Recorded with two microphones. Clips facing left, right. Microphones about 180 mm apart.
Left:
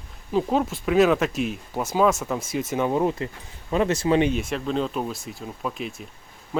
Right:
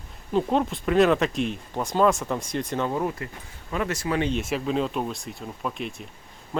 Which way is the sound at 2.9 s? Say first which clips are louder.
Left 4 dB; 20° left (ahead or behind).